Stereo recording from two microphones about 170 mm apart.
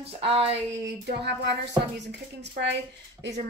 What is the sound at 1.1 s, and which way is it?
Speech, 80° right.